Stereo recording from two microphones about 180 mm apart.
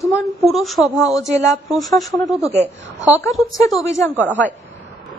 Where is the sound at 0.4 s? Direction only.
Centre (ahead or behind).